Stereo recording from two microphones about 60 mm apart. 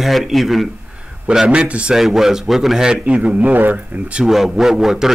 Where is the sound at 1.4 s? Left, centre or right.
Centre.